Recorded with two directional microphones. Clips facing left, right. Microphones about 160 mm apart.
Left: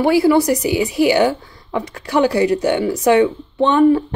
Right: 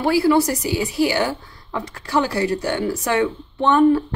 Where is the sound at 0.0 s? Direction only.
15° left (ahead or behind).